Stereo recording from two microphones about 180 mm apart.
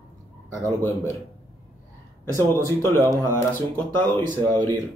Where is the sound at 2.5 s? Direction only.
15° left (ahead or behind).